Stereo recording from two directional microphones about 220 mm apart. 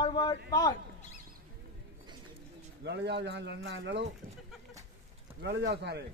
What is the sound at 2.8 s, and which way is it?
A man's voice, 50° right (ahead or behind).